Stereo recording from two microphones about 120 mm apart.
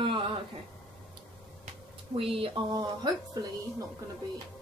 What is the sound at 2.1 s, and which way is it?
Speech, 50° right (ahead or behind).